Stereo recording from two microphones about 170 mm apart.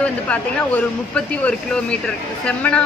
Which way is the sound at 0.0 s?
10° left (ahead or behind).